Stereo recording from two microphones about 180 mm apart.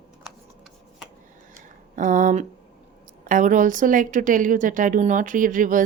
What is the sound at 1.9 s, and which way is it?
A woman's voice, 45° right (ahead or behind).